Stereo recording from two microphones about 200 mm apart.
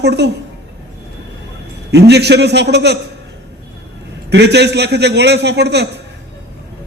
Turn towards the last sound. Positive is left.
turn(degrees=-55)  # may be behind; listen again after turning